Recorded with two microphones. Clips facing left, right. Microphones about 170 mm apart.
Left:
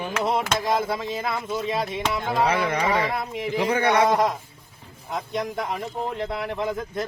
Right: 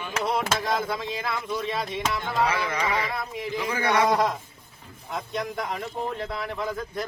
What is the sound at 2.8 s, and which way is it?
Speech, 30° left (ahead or behind).